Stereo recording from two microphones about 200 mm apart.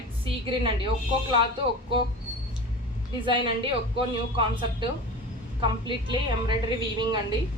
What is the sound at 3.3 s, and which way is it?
Speech, 25° right (ahead or behind).